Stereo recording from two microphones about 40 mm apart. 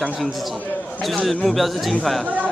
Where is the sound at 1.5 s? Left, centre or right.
Centre.